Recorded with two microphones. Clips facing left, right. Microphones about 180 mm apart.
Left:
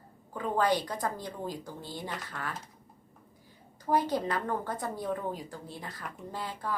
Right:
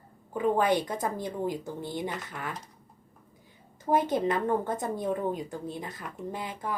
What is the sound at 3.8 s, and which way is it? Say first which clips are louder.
A woman's voice: right 3 dB; 20° right (ahead or behind).